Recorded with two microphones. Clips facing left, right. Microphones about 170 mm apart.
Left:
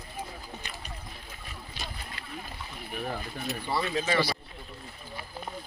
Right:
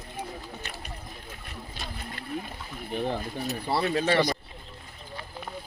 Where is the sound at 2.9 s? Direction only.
25° right (ahead or behind).